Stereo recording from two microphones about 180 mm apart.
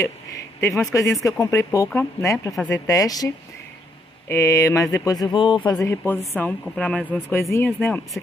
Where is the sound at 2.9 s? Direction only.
20° left (ahead or behind).